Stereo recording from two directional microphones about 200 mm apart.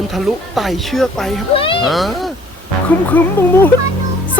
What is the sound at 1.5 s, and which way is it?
Speech, 25° left (ahead or behind).